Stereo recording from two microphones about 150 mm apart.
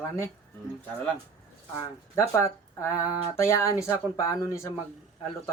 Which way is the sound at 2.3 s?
20° left (ahead or behind).